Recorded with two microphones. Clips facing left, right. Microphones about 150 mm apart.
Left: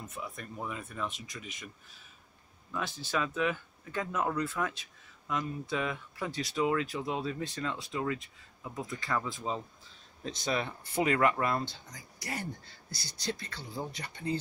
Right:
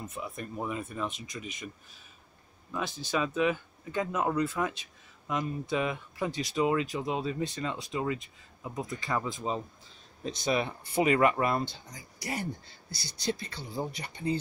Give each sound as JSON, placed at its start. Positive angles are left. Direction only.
{"t": 0.1, "sound": "speech", "side_deg": -20}
{"t": 3.1, "sound": "speech", "side_deg": -15}